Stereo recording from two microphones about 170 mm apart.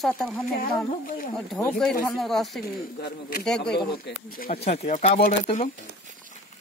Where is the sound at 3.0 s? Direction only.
65° left (ahead or behind).